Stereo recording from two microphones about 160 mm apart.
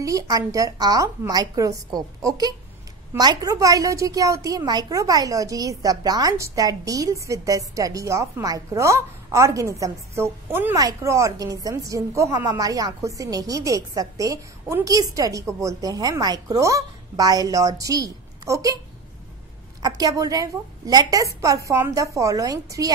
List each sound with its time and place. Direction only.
0.0 s a woman's voice: 20° right (ahead or behind)
19.8 s a woman's voice: 20° right (ahead or behind)